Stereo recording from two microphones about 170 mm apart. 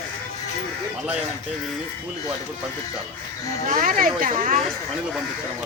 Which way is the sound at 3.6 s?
55° right (ahead or behind).